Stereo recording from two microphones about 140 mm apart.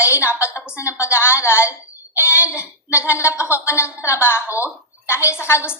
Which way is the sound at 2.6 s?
20° left (ahead or behind).